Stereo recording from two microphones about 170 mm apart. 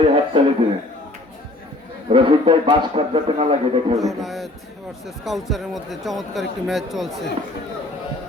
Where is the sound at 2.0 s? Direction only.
30° right (ahead or behind).